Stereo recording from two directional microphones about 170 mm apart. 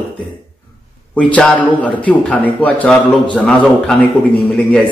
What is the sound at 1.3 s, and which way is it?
Speech, 10° left (ahead or behind).